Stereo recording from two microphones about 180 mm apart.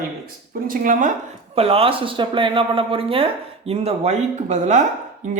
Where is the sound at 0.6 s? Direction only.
50° right (ahead or behind).